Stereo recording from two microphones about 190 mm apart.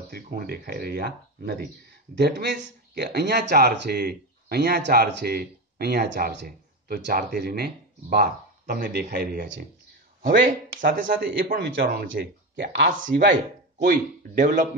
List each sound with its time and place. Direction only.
0.1 s a man's voice: 50° right (ahead or behind)